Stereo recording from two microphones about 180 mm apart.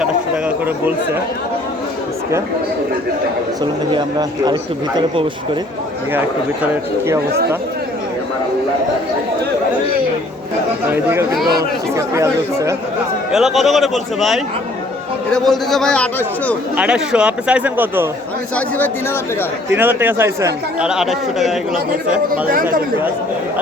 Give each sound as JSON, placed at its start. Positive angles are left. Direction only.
{"t": 0.0, "sound": "a sound", "side_deg": -5}
{"t": 3.6, "sound": "speech", "side_deg": -25}
{"t": 10.9, "sound": "speech", "side_deg": -15}
{"t": 13.3, "sound": "speech", "side_deg": 0}
{"t": 16.7, "sound": "speech", "side_deg": -5}
{"t": 19.7, "sound": "speech", "side_deg": -10}